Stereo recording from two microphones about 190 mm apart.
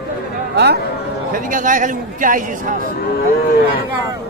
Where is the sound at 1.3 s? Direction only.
45° right (ahead or behind).